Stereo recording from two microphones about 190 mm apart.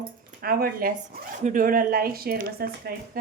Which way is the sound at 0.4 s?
50° right (ahead or behind).